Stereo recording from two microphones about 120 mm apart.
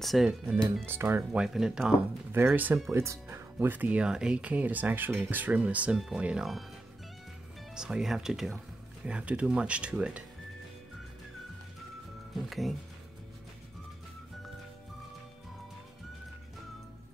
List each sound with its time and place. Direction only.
0.0 s speech: centre (ahead or behind)
0.8 s speech: 20° right (ahead or behind)
1.4 s speech: 5° right (ahead or behind)
2.3 s speech: 15° right (ahead or behind)
7.7 s speech: 5° right (ahead or behind)
12.4 s speech: centre (ahead or behind)